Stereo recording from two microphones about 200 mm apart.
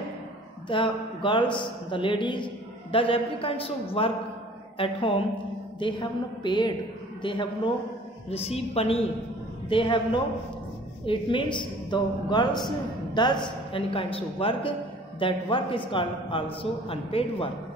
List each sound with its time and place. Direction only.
0.7 s a woman's voice: 25° left (ahead or behind)